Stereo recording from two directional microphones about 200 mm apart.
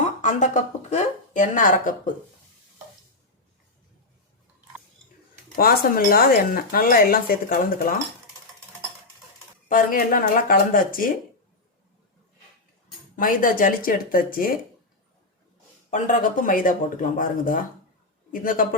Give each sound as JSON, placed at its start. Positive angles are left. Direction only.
{"t": 0.2, "sound": "speech", "side_deg": 40}
{"t": 5.5, "sound": "speech", "side_deg": 45}
{"t": 9.6, "sound": "speech", "side_deg": 45}
{"t": 13.1, "sound": "speech", "side_deg": 45}
{"t": 15.9, "sound": "speech", "side_deg": 40}